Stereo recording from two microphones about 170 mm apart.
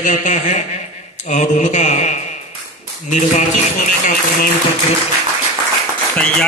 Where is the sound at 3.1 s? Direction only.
45° left (ahead or behind).